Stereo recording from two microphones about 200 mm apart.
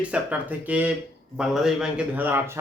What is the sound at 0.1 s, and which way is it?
Speech, 10° right (ahead or behind).